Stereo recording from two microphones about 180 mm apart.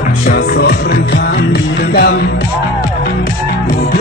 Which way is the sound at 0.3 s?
65° left (ahead or behind).